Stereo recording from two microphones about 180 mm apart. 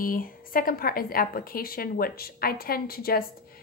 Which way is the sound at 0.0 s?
50° left (ahead or behind).